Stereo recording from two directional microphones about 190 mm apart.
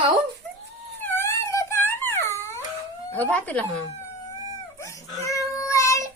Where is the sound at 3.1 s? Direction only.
10° left (ahead or behind).